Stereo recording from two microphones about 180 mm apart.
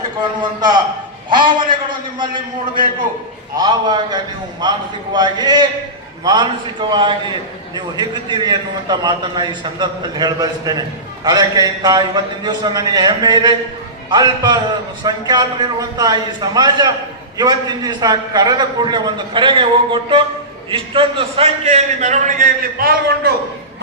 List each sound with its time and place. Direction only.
1.3 s a man's voice: 25° right (ahead or behind); by 23.3 s 60° right (ahead or behind)